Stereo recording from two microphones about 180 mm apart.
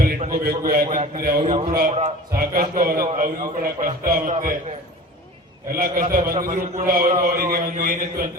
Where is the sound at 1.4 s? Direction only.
30° right (ahead or behind).